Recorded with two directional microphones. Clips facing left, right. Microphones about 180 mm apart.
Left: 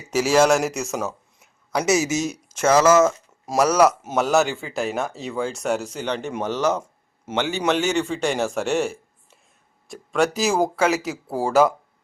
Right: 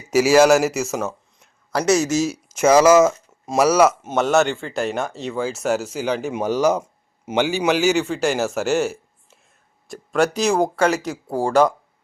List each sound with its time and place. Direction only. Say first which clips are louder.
0.1 s speech: right 4 dB; 10° right (ahead or behind)
3.4 s speech: right 2 dB; centre (ahead or behind)